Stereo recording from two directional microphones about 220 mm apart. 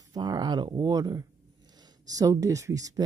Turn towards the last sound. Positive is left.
turn(degrees=-15)  # may be behind; listen again after turning